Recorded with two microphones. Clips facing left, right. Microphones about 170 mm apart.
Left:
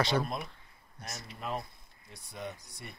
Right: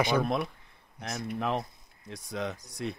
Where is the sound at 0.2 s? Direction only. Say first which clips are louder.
Right 7 dB; 70° right (ahead or behind).